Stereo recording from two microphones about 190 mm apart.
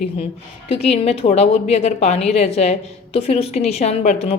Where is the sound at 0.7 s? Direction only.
35° left (ahead or behind).